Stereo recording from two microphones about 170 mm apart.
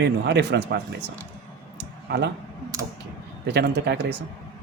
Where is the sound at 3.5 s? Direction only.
80° right.